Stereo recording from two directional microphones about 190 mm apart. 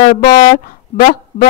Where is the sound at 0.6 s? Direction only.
50° left (ahead or behind).